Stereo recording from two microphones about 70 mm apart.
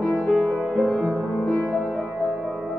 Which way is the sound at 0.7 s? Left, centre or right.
Centre.